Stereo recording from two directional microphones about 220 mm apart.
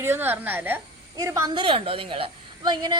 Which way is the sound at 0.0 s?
10° right (ahead or behind).